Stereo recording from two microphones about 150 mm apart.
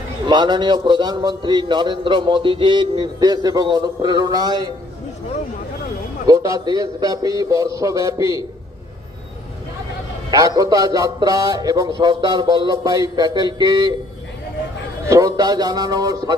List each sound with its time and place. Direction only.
0.3 s a man's voice: 30° right (ahead or behind)
6.2 s a man's voice: 20° right (ahead or behind)
10.3 s a man's voice: 25° right (ahead or behind)
15.1 s a man's voice: 25° right (ahead or behind)